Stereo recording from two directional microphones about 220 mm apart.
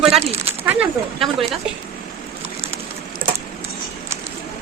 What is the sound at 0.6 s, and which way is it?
Speech, 5° right (ahead or behind).